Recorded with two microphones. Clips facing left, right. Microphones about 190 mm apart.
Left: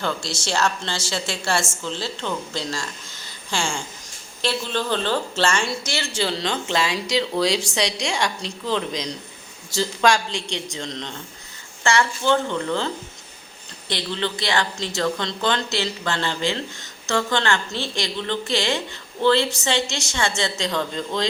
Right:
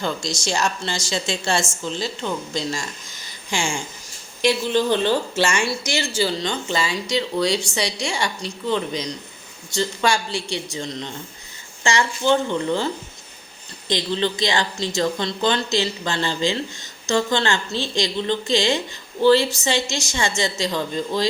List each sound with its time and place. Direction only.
0.0 s a woman's voice: 15° right (ahead or behind)
6.1 s a woman's voice: centre (ahead or behind)